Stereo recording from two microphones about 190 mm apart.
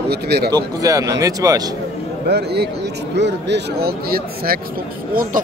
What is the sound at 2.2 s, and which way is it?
A man's voice, 60° right (ahead or behind).